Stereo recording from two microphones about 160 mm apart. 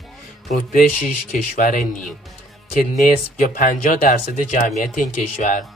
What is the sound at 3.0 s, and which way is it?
Speech, 55° left (ahead or behind).